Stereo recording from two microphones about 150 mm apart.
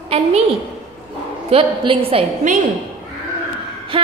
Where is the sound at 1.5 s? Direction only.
35° right (ahead or behind).